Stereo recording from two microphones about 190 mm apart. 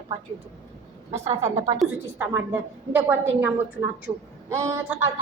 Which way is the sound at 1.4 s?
15° right (ahead or behind).